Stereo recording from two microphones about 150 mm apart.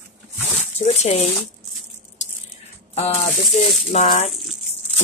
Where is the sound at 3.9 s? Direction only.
45° left (ahead or behind).